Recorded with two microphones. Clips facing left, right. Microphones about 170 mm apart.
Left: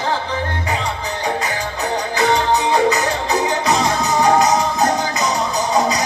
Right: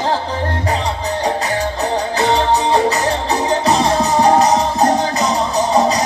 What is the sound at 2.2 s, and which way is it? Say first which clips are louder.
Music: right 1 dB; 30° right (ahead or behind).